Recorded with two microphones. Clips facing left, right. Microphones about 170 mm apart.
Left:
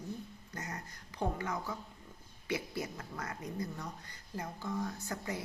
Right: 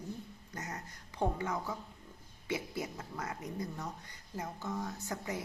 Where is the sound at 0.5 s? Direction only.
25° right (ahead or behind).